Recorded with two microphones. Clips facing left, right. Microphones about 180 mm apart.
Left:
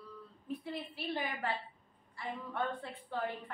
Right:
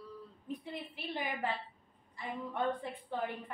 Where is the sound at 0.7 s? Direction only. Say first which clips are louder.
Left 5 dB; 15° right (ahead or behind).